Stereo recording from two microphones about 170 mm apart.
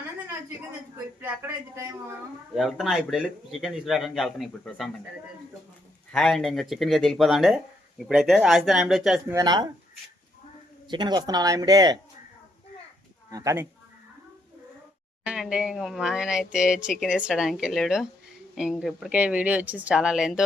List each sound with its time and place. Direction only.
1.2 s a man's voice: 15° right (ahead or behind)
2.6 s speech: centre (ahead or behind)
6.1 s speech: 5° left (ahead or behind)
9.3 s speech: 25° right (ahead or behind)
10.8 s speech: 25° right (ahead or behind)
13.3 s speech: 20° right (ahead or behind)
15.2 s speech: 5° right (ahead or behind)